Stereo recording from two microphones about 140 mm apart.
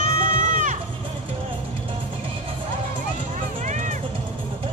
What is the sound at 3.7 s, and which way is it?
Music, 60° right (ahead or behind).